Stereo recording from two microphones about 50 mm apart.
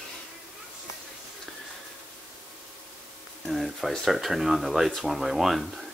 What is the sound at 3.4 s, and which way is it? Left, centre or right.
Speech, centre.